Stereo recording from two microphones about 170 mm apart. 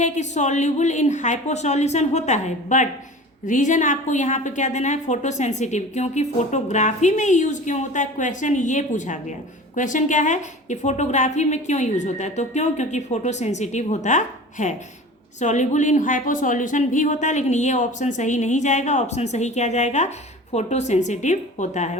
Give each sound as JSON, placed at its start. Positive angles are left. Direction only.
{"t": 0.0, "sound": "a woman's voice", "side_deg": 45}